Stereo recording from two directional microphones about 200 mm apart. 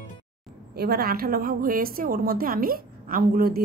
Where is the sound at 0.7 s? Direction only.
50° right (ahead or behind).